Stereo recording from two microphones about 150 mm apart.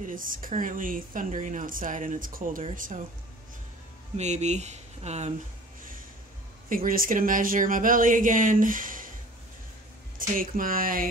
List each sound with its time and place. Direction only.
0.0 s speech: 65° right (ahead or behind)
4.2 s speech: 50° right (ahead or behind)
6.7 s speech: 70° right (ahead or behind)
10.1 s speech: 65° right (ahead or behind)